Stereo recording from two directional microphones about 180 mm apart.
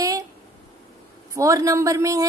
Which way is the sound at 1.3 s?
20° right (ahead or behind).